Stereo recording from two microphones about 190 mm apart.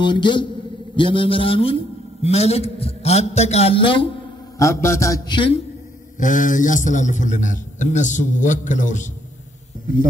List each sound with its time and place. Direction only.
0.0 s a man's voice: 25° left (ahead or behind)
4.6 s mantra: 15° left (ahead or behind)
6.1 s a man's voice: 45° left (ahead or behind)